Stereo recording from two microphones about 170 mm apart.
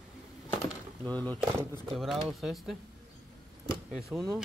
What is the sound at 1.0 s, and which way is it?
Speech, 10° left (ahead or behind).